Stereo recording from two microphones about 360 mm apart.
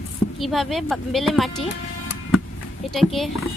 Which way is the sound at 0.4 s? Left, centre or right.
Centre.